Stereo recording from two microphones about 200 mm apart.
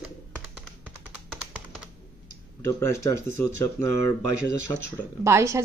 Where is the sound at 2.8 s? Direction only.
15° left (ahead or behind).